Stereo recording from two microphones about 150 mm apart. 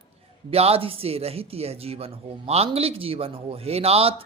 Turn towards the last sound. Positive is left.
turn(degrees=-40)  # may be behind; listen again after turning